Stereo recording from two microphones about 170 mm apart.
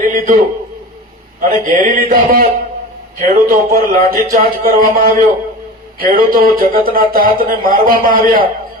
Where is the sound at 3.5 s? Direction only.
60° right (ahead or behind).